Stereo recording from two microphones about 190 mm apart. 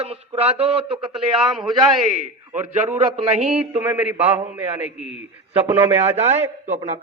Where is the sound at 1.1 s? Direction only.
Centre (ahead or behind).